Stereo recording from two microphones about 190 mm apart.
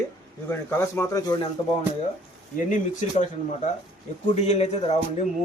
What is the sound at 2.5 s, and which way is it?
Speech, 40° left (ahead or behind).